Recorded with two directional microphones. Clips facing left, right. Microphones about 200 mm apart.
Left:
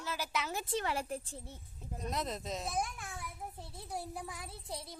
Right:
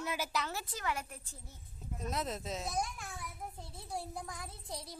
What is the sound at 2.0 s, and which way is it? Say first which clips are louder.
A child's voice: even; centre (ahead or behind).